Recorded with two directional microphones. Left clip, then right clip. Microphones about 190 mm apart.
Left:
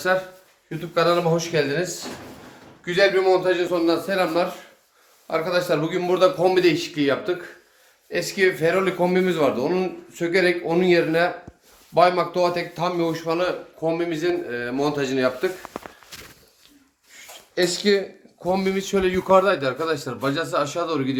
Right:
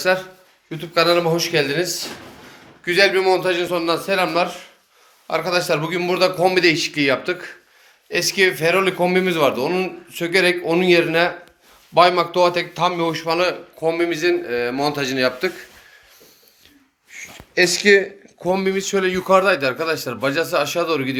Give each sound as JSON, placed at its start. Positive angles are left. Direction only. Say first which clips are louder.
{"t": 0.8, "sound": "a man's voice", "louder": "right 3 dB", "side_deg": 0}
{"t": 17.2, "sound": "a sound", "louder": "right 6 dB", "side_deg": -10}
{"t": 18.5, "sound": "a man's voice", "louder": "right 2 dB", "side_deg": 15}